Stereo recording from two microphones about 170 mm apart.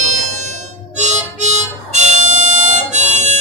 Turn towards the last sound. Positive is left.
turn(degrees=-45)  # may be behind; listen again after turning